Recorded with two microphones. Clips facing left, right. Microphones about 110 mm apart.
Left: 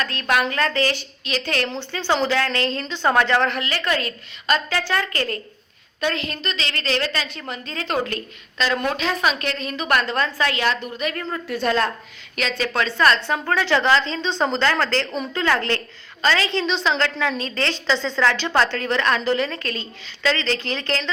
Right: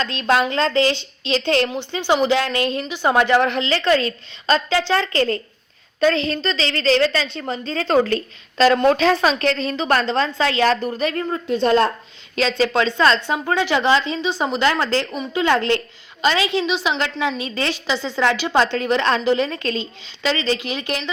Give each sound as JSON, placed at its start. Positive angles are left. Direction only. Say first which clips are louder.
{"t": 0.0, "sound": "a woman's voice", "louder": "right 3 dB", "side_deg": -25}
{"t": 1.7, "sound": "a woman's voice", "louder": "right 3 dB", "side_deg": -15}